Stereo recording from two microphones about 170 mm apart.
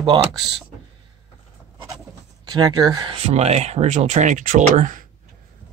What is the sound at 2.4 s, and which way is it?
Speech, 25° right (ahead or behind).